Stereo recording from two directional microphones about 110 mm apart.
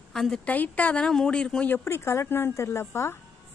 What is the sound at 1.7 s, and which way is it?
Speech, 20° left (ahead or behind).